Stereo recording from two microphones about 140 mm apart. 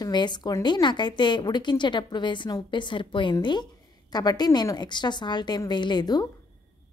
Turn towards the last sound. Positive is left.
turn(degrees=30)  # may be behind; listen again after turning